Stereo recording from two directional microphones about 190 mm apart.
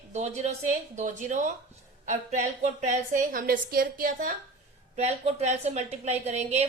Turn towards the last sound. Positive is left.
turn(degrees=-35)  # may be behind; listen again after turning